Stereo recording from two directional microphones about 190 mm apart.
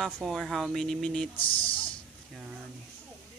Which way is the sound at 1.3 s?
30° left (ahead or behind).